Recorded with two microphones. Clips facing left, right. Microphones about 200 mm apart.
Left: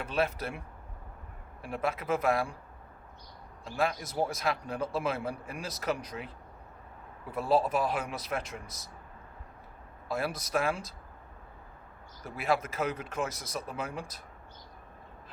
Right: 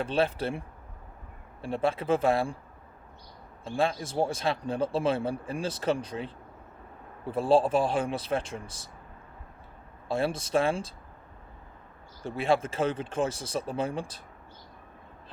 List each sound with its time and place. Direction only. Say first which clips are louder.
0.0 s a man's voice: right 4 dB; 30° right (ahead or behind)
1.6 s a man's voice: right 5 dB; 30° right (ahead or behind)
3.6 s a man's voice: right 3 dB; 30° right (ahead or behind)
10.1 s a man's voice: right 4 dB; 30° right (ahead or behind)
12.2 s a man's voice: right 4 dB; 30° right (ahead or behind)